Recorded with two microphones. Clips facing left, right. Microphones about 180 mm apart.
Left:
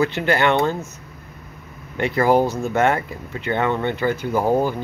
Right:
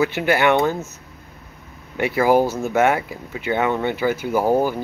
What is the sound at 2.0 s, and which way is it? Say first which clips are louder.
Speech: right 1 dB; 5° right (ahead or behind).